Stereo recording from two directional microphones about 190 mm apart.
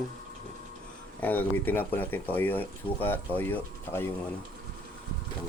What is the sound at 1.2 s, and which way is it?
Speech, 10° left (ahead or behind).